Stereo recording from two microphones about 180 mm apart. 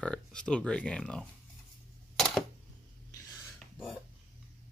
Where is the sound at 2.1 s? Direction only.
Centre (ahead or behind).